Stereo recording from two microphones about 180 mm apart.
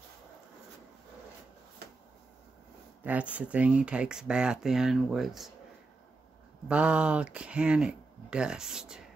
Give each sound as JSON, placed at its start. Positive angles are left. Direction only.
{"t": 3.0, "sound": "speech", "side_deg": -10}
{"t": 6.7, "sound": "speech", "side_deg": -5}